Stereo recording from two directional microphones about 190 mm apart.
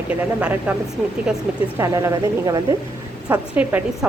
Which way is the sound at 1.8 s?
15° right (ahead or behind).